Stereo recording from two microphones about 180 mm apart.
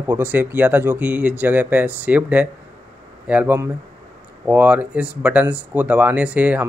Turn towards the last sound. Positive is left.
turn(degrees=-10)  # may be behind; listen again after turning